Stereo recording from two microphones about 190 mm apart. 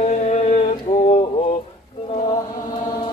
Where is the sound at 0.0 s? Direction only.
35° left (ahead or behind).